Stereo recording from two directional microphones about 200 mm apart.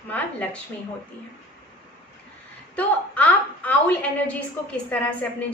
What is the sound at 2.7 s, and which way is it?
A woman's voice, 10° left (ahead or behind).